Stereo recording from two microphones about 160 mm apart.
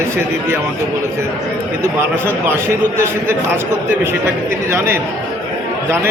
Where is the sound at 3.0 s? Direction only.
15° right (ahead or behind).